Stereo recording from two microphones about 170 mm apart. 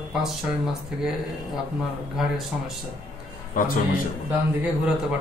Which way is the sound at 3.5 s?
50° left (ahead or behind).